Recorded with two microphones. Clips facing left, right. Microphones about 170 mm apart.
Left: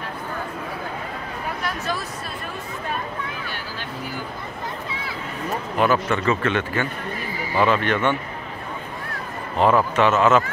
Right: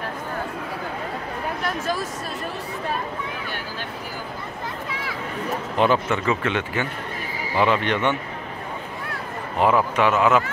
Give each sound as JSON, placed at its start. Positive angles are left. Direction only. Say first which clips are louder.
{"t": 5.8, "sound": "speech", "louder": "even", "side_deg": -20}
{"t": 9.6, "sound": "speech", "louder": "left 1 dB", "side_deg": -10}